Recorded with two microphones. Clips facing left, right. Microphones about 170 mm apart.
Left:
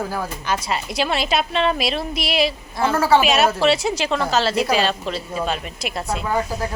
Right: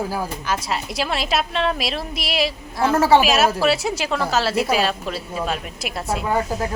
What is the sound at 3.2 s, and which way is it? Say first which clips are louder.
A woman's voice: even; centre (ahead or behind).